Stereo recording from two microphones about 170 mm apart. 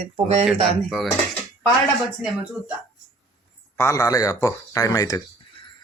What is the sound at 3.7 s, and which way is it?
Speech, 15° left (ahead or behind).